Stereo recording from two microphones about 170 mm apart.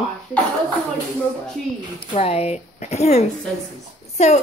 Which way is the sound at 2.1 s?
35° left (ahead or behind).